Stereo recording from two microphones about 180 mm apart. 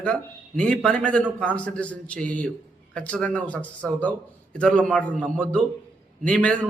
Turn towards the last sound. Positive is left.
turn(degrees=5)  # may be behind; listen again after turning